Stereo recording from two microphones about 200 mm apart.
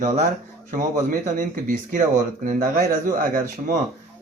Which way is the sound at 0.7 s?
40° right (ahead or behind).